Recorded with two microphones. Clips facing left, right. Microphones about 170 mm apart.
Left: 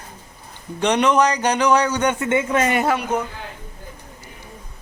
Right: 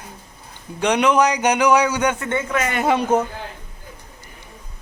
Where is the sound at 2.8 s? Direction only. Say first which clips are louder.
Right 3 dB; 25° right (ahead or behind).